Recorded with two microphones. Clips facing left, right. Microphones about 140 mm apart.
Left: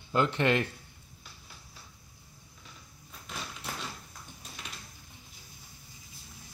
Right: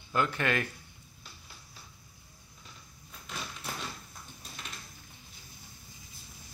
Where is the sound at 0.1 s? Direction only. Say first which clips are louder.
Left 3 dB; 25° left (ahead or behind).